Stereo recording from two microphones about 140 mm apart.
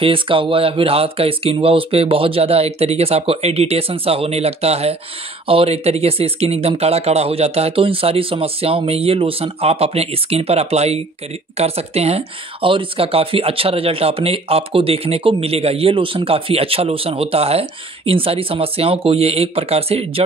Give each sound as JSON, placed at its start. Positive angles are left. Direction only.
{"t": 0.0, "sound": "speech", "side_deg": -40}